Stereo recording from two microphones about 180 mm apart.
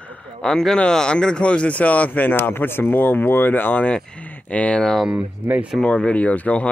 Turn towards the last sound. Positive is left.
turn(degrees=5)  # may be behind; listen again after turning